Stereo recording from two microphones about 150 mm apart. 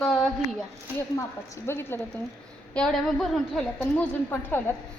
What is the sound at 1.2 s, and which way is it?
A woman's voice, 20° left (ahead or behind).